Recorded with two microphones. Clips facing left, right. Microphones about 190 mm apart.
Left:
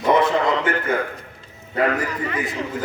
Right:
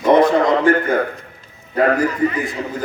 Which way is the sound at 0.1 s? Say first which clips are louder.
Right 5 dB; 45° right (ahead or behind).